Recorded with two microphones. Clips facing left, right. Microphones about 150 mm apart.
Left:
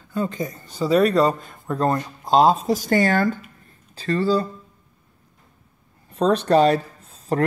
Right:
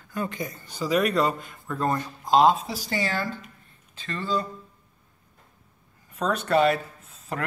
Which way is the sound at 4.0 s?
35° left (ahead or behind).